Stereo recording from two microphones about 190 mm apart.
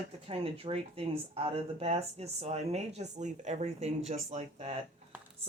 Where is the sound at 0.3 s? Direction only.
30° right (ahead or behind).